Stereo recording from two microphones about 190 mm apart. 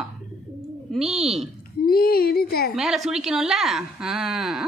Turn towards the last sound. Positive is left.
turn(degrees=0)  # may be behind; listen again after turning